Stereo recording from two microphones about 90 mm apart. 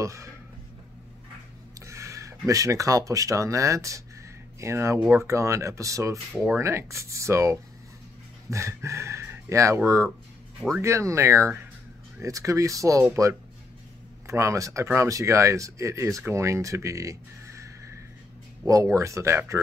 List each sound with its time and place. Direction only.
0.0 s speech: 35° right (ahead or behind)
1.9 s speech: 35° right (ahead or behind)
10.8 s speech: 30° right (ahead or behind)
18.9 s speech: 35° right (ahead or behind)